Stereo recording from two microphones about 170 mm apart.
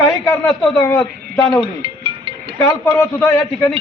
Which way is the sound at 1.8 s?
30° right (ahead or behind).